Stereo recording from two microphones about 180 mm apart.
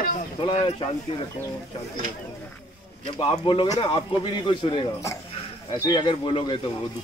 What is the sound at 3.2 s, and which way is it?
Speech, 30° left (ahead or behind).